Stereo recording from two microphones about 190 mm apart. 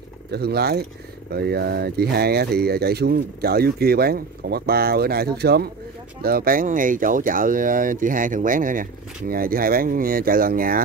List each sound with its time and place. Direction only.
0.3 s speech: 55° right (ahead or behind)